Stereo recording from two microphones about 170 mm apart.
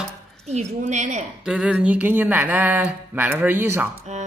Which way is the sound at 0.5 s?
45° right (ahead or behind).